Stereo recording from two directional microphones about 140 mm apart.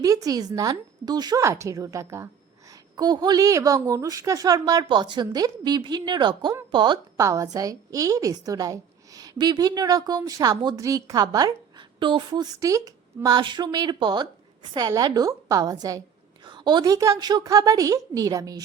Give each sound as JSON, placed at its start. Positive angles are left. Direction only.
{"t": 0.0, "sound": "a woman's voice", "side_deg": -25}